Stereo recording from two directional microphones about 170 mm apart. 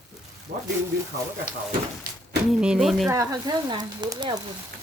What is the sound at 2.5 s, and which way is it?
Speech, 5° right (ahead or behind).